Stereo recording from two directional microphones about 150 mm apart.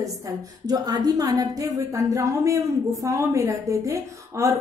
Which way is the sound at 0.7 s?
25° right (ahead or behind).